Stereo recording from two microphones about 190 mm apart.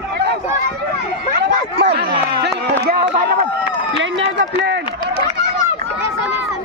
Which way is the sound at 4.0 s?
65° right (ahead or behind).